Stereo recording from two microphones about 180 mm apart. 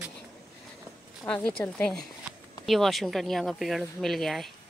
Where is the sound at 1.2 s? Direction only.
5° left (ahead or behind).